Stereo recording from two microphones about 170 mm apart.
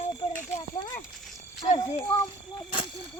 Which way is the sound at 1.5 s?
40° left (ahead or behind).